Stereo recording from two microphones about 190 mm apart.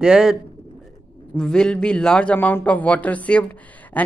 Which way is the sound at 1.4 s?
5° left (ahead or behind).